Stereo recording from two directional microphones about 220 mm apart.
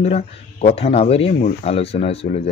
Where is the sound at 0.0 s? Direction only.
30° left (ahead or behind).